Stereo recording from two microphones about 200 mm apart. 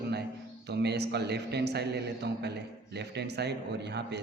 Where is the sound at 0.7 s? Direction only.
55° right (ahead or behind).